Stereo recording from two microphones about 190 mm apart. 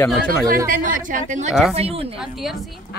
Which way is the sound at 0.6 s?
45° right (ahead or behind).